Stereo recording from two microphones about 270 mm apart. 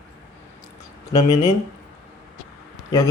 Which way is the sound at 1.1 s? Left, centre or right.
Centre.